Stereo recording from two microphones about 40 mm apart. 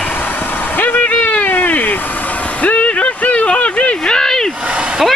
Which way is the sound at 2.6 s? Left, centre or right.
Left.